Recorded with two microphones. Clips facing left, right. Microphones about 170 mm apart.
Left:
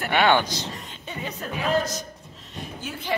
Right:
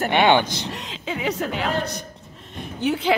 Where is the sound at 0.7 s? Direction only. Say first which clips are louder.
Right 7 dB; 90° right; by 2.0 s 65° right (ahead or behind).